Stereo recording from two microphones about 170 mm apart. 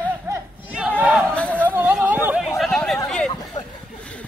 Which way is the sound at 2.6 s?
Centre (ahead or behind).